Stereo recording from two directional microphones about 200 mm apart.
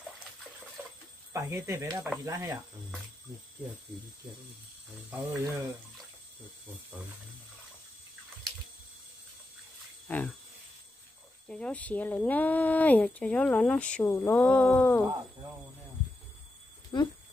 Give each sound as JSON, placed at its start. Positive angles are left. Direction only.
{"t": 1.3, "sound": "speech", "side_deg": -15}
{"t": 5.3, "sound": "speech", "side_deg": -15}
{"t": 10.0, "sound": "jingle bell", "side_deg": 5}
{"t": 11.4, "sound": "speech", "side_deg": 5}
{"t": 16.9, "sound": "speech", "side_deg": 20}